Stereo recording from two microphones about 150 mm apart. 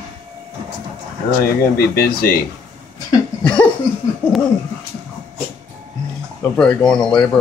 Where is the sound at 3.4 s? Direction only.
5° left (ahead or behind).